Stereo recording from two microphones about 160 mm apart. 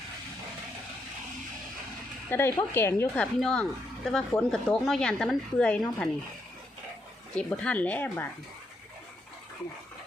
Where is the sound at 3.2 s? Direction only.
5° left (ahead or behind).